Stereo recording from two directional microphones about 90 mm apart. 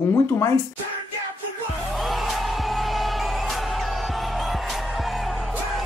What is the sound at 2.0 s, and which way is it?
Music, centre (ahead or behind).